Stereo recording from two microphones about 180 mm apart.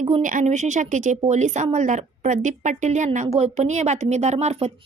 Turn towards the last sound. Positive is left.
turn(degrees=-35)  # may be behind; listen again after turning